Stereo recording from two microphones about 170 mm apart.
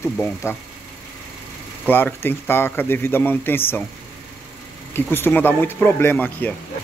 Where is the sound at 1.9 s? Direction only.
10° left (ahead or behind).